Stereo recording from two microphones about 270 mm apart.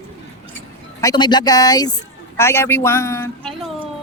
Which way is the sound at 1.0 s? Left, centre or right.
Centre.